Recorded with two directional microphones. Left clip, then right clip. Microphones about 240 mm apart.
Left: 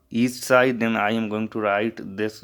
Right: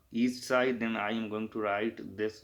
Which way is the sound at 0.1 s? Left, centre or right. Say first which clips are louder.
Left 11 dB; left.